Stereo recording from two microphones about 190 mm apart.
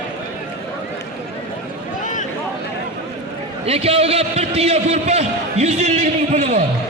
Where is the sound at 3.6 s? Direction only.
30° right (ahead or behind).